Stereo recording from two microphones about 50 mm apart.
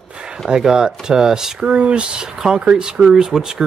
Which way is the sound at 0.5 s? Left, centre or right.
Centre.